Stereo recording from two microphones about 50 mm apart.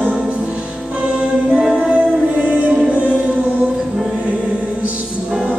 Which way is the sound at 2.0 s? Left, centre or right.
Right.